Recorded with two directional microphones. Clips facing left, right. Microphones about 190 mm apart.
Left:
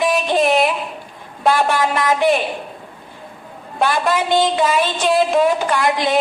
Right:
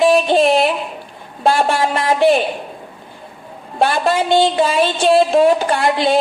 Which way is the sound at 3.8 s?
30° right (ahead or behind).